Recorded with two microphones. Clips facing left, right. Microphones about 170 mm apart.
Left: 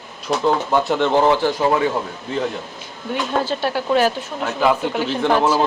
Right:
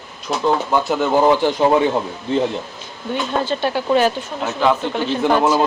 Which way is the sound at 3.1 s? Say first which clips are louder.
Right 1 dB; 5° left (ahead or behind).